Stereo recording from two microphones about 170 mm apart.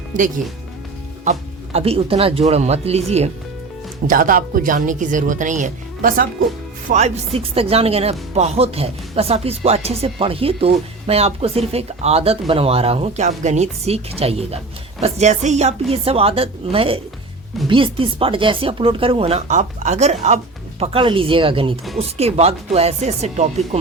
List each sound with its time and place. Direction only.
1.2 s speech: 40° right (ahead or behind)
4.0 s speech: 55° right (ahead or behind)
7.3 s speech: 35° right (ahead or behind)